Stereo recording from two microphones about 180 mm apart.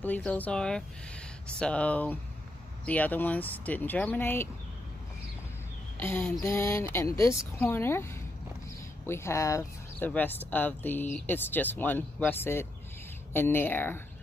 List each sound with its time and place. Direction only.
0.0 s speech: 10° left (ahead or behind)
5.9 s speech: 10° left (ahead or behind)